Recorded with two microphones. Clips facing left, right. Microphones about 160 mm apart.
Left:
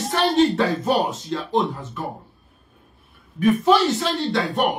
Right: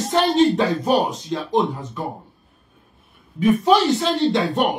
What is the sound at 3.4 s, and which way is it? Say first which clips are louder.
A man's voice: right 1 dB; 20° right (ahead or behind).